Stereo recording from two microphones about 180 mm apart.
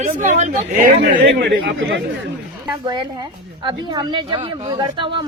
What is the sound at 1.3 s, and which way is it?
Speech, 75° right (ahead or behind).